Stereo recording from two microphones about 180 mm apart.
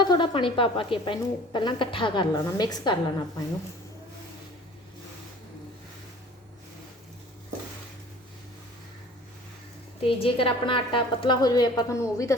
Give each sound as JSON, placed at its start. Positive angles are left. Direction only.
{"t": 0.0, "sound": "a woman's voice", "side_deg": 25}
{"t": 10.0, "sound": "a woman's voice", "side_deg": 30}